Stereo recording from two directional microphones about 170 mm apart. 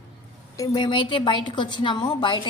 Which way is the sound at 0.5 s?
20° left (ahead or behind).